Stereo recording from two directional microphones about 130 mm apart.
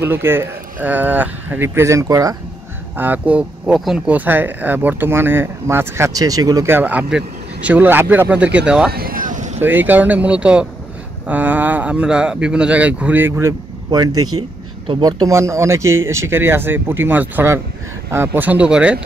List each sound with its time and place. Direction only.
0.0 s speech: 20° right (ahead or behind)
3.0 s speech: 10° right (ahead or behind); by 6.7 s 25° right (ahead or behind)
6.7 s speech: 15° right (ahead or behind)
9.1 s vehicle: 80° right
9.6 s speech: 15° right (ahead or behind)
13.8 s speech: 30° right (ahead or behind); by 18.9 s 10° right (ahead or behind)